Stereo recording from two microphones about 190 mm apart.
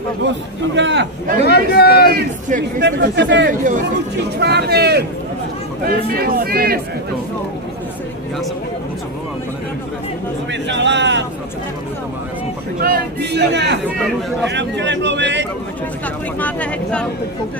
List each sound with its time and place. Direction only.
0.7 s a man's voice: 70° right (ahead or behind)
1.4 s speech: 60° left (ahead or behind)
2.8 s a man's voice: 70° right (ahead or behind)
3.4 s speech: 45° right (ahead or behind)
4.4 s speech: 60° right (ahead or behind)
6.1 s speech: 50° right (ahead or behind)
10.5 s a man's voice: 70° right (ahead or behind)
12.8 s a man's voice: 55° right (ahead or behind)
16.3 s speech: 10° left (ahead or behind)